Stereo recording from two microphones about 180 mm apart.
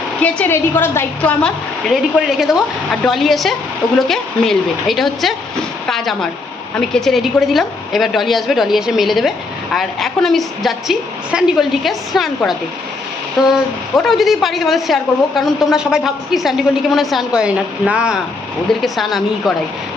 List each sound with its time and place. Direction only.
0.2 s a woman's voice: 5° left (ahead or behind)
6.7 s a woman's voice: centre (ahead or behind)